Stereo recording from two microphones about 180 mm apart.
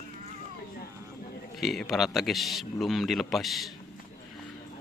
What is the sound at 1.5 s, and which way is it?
A man's voice, centre (ahead or behind).